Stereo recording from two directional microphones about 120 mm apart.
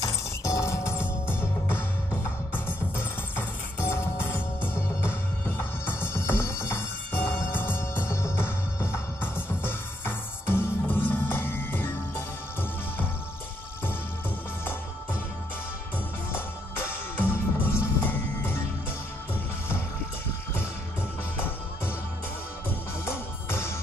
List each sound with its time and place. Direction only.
0.0 s music: 25° left (ahead or behind)
16.3 s music: 20° left (ahead or behind)
21.4 s music: 20° left (ahead or behind)
23.0 s music: 20° left (ahead or behind)